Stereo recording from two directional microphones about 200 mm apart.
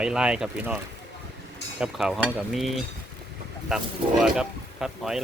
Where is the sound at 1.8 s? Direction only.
5° right (ahead or behind).